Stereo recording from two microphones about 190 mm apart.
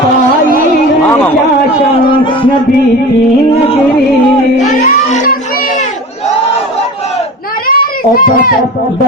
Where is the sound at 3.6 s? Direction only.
30° left (ahead or behind).